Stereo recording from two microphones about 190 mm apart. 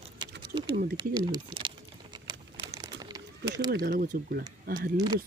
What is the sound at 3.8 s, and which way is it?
Speech, 45° right (ahead or behind).